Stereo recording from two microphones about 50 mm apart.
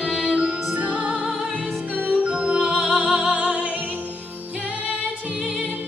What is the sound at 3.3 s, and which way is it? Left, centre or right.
Music, right.